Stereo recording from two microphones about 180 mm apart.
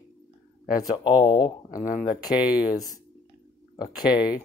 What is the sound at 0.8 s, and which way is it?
Speech, 25° left (ahead or behind).